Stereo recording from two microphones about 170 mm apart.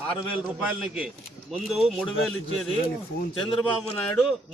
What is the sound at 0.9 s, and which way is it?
Speech, 5° right (ahead or behind).